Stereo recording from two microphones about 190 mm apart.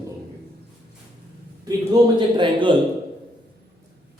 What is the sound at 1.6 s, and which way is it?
A man's voice, 20° right (ahead or behind).